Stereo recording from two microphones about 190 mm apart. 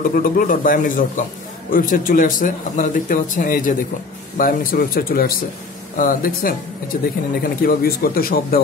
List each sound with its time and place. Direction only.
0.1 s a man's voice: 45° left (ahead or behind)